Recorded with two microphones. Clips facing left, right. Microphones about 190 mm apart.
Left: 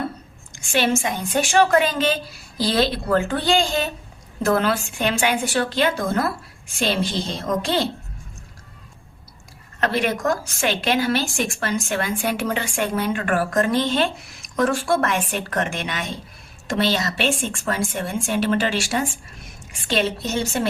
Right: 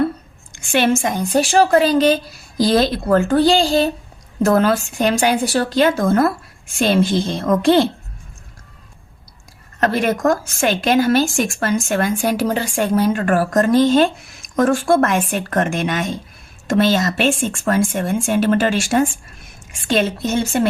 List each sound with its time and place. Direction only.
0.5 s a woman's voice: 55° right (ahead or behind)
9.8 s a woman's voice: 45° right (ahead or behind)